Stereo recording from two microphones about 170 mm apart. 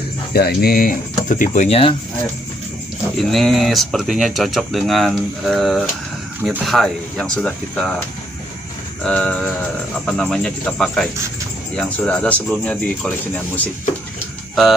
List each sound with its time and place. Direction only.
0.3 s speech: 65° left (ahead or behind); by 2.0 s 35° left (ahead or behind)
3.2 s speech: centre (ahead or behind)
9.0 s speech: 5° left (ahead or behind)
14.5 s speech: centre (ahead or behind)